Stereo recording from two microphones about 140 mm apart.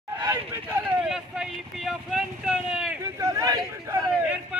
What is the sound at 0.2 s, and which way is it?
Speech, 15° right (ahead or behind).